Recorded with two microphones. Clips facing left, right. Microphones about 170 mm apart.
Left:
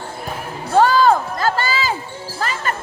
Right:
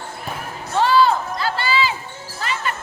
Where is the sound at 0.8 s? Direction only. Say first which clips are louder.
Left 3 dB; 45° left (ahead or behind).